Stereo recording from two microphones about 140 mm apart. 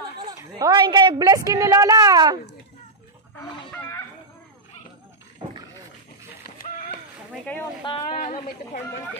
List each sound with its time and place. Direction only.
0.3 s a woman's voice: 25° right (ahead or behind)
6.4 s a sound: 90° left
7.8 s speech: 40° left (ahead or behind)
8.2 s a woman's voice: 65° left (ahead or behind)